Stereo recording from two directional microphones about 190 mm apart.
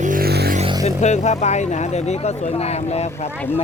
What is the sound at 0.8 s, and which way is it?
Speech, 35° left (ahead or behind).